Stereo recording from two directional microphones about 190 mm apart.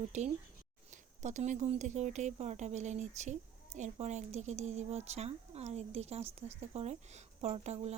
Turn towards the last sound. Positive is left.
turn(degrees=-35)  # may be behind; listen again after turning